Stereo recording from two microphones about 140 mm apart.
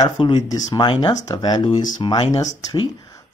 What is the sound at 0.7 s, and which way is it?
Speech, 35° left (ahead or behind).